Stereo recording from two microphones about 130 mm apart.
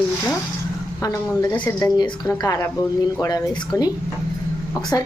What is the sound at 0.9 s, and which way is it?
Speech, 25° left (ahead or behind).